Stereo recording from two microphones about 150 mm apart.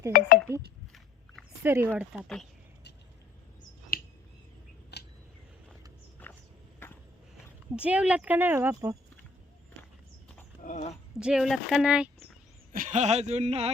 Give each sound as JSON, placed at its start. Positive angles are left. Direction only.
{"t": 0.1, "sound": "speech", "side_deg": 70}
{"t": 1.6, "sound": "speech", "side_deg": -15}
{"t": 2.0, "sound": "speech", "side_deg": -5}
{"t": 3.6, "sound": "finger snapping", "side_deg": 80}
{"t": 6.2, "sound": "walk", "side_deg": 10}
{"t": 7.8, "sound": "speech", "side_deg": -10}
{"t": 10.7, "sound": "speech", "side_deg": 60}
{"t": 11.2, "sound": "speech", "side_deg": -5}
{"t": 12.7, "sound": "speech", "side_deg": -60}